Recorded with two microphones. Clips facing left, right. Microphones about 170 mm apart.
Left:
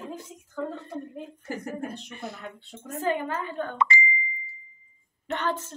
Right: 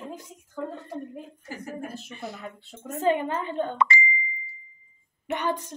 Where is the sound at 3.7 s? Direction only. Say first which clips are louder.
Left 1 dB; 65° right (ahead or behind).